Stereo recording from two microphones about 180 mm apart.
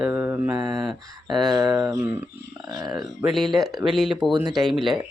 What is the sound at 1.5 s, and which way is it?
Speech, 20° right (ahead or behind).